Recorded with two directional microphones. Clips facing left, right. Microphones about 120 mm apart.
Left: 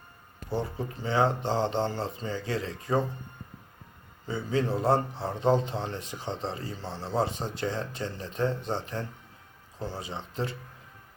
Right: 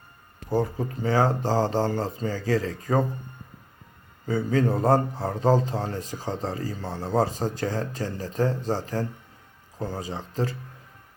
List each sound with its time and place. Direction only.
0.5 s speech: 40° right (ahead or behind)
4.3 s a man's voice: 45° right (ahead or behind)